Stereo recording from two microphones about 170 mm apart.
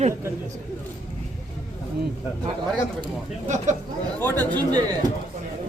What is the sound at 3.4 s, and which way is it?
Speech, 45° right (ahead or behind).